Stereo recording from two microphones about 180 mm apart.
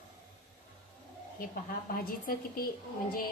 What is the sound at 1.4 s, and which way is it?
A woman's voice, 55° left (ahead or behind).